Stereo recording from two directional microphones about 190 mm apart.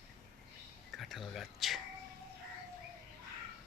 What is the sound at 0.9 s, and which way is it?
Whispering, centre (ahead or behind).